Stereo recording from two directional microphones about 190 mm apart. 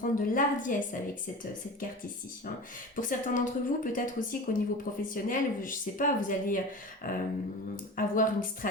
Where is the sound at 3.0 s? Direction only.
45° left (ahead or behind).